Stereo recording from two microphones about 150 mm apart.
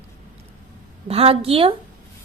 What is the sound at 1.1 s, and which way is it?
Speech, 40° right (ahead or behind).